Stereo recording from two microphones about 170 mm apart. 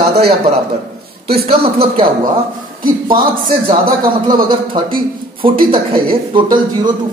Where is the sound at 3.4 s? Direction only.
55° right (ahead or behind).